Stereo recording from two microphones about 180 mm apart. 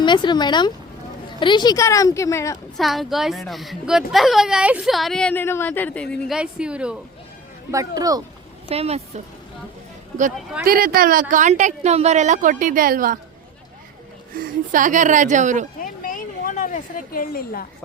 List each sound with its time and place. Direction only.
0.0 s a woman's voice: 25° left (ahead or behind)
2.7 s speech: centre (ahead or behind)
7.7 s speech: 20° right (ahead or behind)
8.7 s speech: 35° right (ahead or behind)
10.7 s speech: 55° right (ahead or behind)
14.3 s speech: 45° right (ahead or behind)
15.8 s a sound: 50° left (ahead or behind)